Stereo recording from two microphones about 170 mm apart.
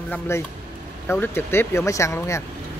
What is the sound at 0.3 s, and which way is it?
Speech, 15° left (ahead or behind).